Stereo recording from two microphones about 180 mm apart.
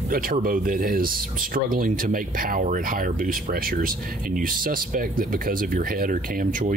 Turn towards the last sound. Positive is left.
turn(degrees=-50)  # may be behind; listen again after turning